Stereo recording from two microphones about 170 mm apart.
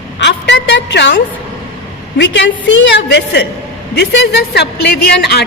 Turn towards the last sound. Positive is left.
turn(degrees=70)  # may be behind; listen again after turning